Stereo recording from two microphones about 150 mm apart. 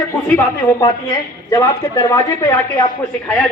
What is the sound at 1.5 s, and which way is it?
A man's voice, 20° left (ahead or behind).